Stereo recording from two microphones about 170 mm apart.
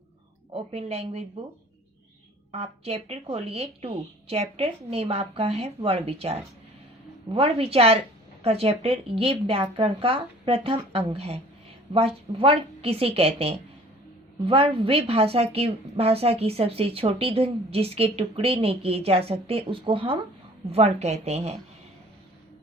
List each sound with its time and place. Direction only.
0.5 s a woman's voice: 35° right (ahead or behind)
2.5 s a woman's voice: 35° right (ahead or behind)